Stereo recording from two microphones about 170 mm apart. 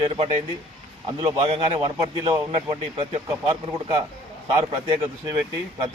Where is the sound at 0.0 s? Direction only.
35° right (ahead or behind).